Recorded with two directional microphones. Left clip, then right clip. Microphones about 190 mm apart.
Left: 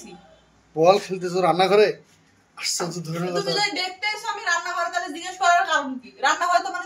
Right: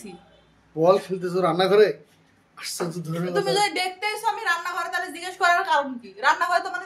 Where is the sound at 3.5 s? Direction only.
60° right (ahead or behind).